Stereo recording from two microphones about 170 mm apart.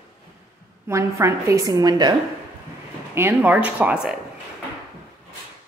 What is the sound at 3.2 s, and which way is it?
Speech, 10° right (ahead or behind).